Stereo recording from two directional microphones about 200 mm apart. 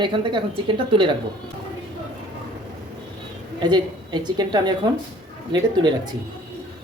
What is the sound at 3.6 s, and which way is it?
A woman's voice, 20° right (ahead or behind).